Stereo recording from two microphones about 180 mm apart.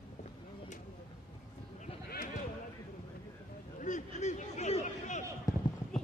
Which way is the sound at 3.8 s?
45° left (ahead or behind).